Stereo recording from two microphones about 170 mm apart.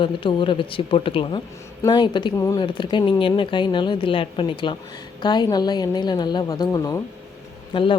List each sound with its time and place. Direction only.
0.0 s speech: 30° left (ahead or behind)